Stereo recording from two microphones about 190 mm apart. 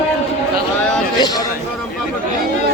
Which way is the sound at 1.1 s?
20° left (ahead or behind).